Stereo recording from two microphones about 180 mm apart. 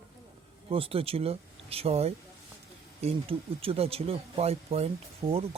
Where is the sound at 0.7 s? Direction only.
30° right (ahead or behind).